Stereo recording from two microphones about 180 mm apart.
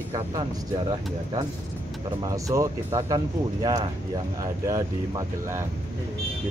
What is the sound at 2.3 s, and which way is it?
Speech, 20° right (ahead or behind).